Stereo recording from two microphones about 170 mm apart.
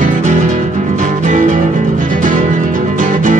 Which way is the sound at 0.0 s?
50° right (ahead or behind).